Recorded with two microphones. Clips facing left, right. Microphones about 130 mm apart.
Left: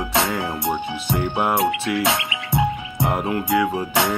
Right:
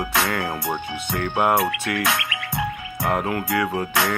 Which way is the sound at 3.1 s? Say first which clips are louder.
Left 1 dB; 15° left (ahead or behind).